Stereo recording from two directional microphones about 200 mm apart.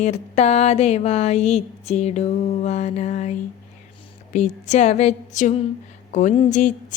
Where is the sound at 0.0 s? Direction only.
35° left (ahead or behind).